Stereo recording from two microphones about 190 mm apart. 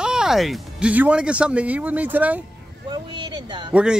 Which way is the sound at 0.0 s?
5° right (ahead or behind).